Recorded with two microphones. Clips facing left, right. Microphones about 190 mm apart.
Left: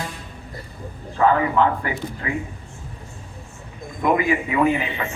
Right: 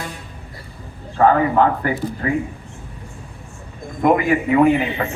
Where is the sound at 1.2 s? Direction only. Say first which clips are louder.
Right 3 dB; 45° right (ahead or behind).